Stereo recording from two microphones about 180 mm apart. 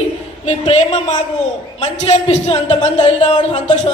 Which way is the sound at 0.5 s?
35° left (ahead or behind).